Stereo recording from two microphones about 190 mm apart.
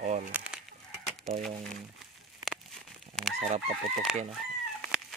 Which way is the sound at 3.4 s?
35° right (ahead or behind).